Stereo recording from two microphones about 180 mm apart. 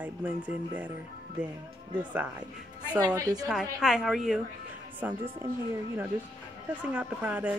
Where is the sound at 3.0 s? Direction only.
20° right (ahead or behind).